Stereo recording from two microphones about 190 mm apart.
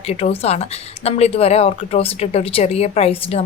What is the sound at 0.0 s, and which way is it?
Speech, 30° left (ahead or behind).